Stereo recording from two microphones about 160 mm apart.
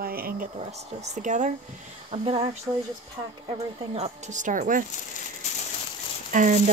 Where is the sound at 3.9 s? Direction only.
45° right (ahead or behind).